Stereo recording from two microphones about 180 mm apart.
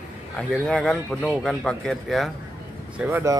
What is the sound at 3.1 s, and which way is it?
Speech, 15° right (ahead or behind).